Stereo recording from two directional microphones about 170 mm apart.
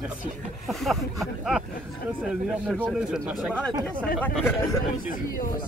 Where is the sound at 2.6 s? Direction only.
5° right (ahead or behind).